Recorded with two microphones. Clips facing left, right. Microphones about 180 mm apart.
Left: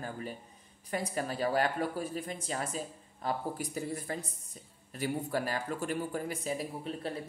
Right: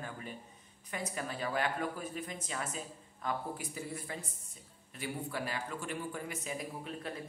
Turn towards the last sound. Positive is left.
turn(degrees=30)  # may be behind; listen again after turning